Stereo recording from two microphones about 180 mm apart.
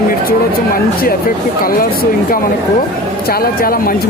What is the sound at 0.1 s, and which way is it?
Speech, 55° left (ahead or behind).